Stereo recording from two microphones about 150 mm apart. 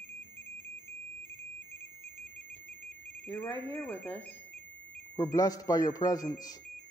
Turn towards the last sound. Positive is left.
turn(degrees=25)  # may be behind; listen again after turning